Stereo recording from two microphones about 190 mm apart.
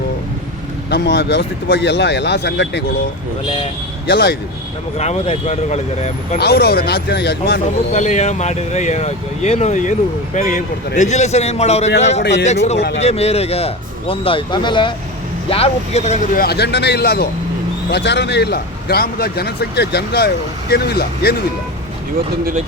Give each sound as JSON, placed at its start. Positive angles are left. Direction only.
{"t": 0.9, "sound": "speech", "side_deg": 60}
{"t": 4.1, "sound": "speech", "side_deg": 60}
{"t": 4.9, "sound": "speech", "side_deg": 35}
{"t": 6.4, "sound": "speech", "side_deg": 55}
{"t": 7.9, "sound": "speech", "side_deg": 35}
{"t": 12.2, "sound": "a man's voice", "side_deg": 70}
{"t": 13.0, "sound": "speech", "side_deg": 35}
{"t": 16.4, "sound": "speech", "side_deg": 60}